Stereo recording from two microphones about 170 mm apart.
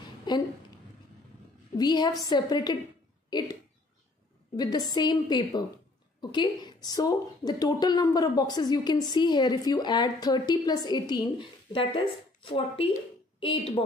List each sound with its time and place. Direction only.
0.3 s a woman's voice: 25° left (ahead or behind)
1.8 s speech: 25° left (ahead or behind)
4.6 s speech: 25° left (ahead or behind)